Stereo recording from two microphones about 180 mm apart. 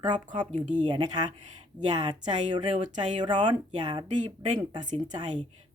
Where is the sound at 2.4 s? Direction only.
40° right (ahead or behind).